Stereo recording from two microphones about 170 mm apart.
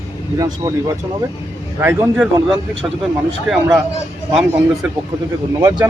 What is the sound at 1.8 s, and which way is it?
Speech, 15° right (ahead or behind).